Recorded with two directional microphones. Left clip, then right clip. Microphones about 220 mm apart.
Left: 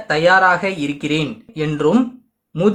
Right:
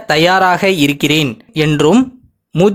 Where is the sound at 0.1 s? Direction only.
45° right (ahead or behind).